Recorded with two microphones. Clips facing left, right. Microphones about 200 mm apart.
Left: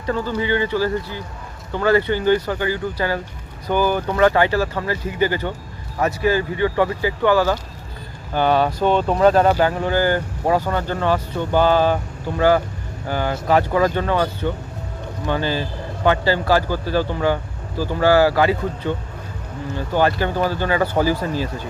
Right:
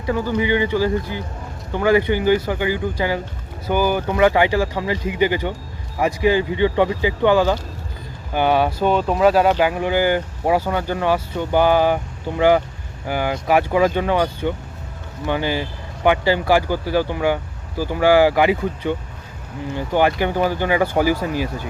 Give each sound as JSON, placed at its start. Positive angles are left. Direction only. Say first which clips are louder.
{"t": 0.0, "sound": "speech", "louder": "right 2 dB", "side_deg": -10}